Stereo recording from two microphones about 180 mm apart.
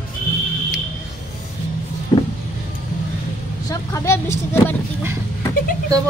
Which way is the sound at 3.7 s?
15° left (ahead or behind).